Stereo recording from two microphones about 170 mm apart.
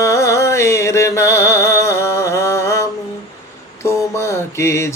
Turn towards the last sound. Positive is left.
turn(degrees=15)  # may be behind; listen again after turning